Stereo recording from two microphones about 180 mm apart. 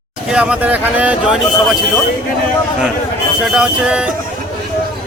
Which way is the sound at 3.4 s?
Centre (ahead or behind).